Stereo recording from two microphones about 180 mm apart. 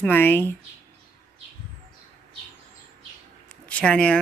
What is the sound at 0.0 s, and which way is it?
Speech, 10° left (ahead or behind).